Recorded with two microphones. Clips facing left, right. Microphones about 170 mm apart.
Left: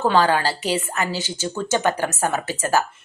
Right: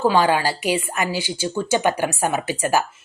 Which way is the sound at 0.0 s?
10° right (ahead or behind).